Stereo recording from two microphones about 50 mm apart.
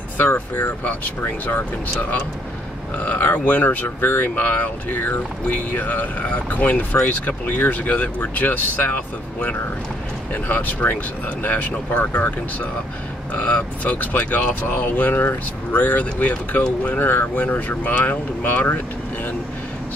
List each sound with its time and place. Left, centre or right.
0.2 s speech: left